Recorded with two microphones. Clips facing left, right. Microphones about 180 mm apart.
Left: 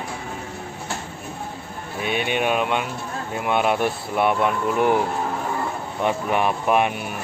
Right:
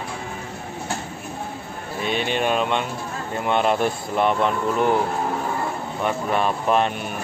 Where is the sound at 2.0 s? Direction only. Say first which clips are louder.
Even; 10° left (ahead or behind).